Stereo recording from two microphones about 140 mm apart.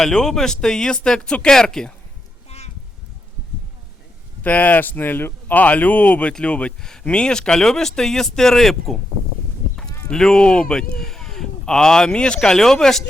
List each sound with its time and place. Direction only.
0.0 s speech: 5° left (ahead or behind)
2.5 s a sound: 50° left (ahead or behind)
4.4 s speech: 10° left (ahead or behind)
10.1 s speech: 5° left (ahead or behind)